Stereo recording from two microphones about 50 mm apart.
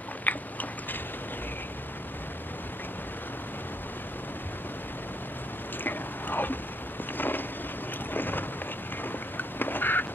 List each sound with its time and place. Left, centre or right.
0.2 s biting: left
5.9 s a sound: left
8.1 s boat: left
9.4 s duck: left